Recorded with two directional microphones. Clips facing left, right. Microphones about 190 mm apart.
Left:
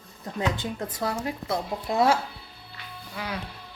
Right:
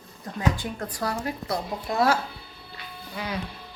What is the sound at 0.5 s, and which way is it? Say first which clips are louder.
A woman's voice: left 1 dB; 20° left (ahead or behind).